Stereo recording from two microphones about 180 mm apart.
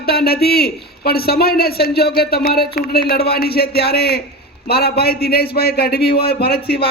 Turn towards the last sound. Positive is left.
turn(degrees=60)  # may be behind; listen again after turning